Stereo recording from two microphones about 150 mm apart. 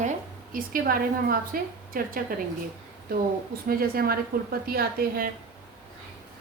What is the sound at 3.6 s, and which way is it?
A woman's voice, 80° right.